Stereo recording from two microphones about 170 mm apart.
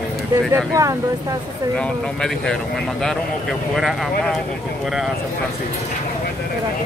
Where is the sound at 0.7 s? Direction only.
20° right (ahead or behind).